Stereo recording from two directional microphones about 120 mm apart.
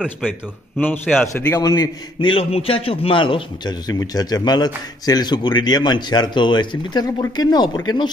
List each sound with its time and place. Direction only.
0.7 s a man's voice: 15° left (ahead or behind)
1.6 s a man's voice: 30° left (ahead or behind)
2.2 s a man's voice: 50° left (ahead or behind)